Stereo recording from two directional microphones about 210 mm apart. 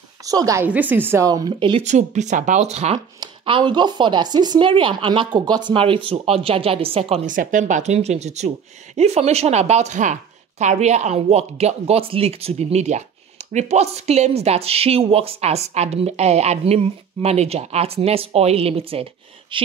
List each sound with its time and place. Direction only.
0.2 s speech: 15° right (ahead or behind)